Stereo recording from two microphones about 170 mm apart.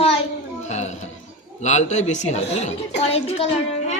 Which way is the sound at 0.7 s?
40° left (ahead or behind).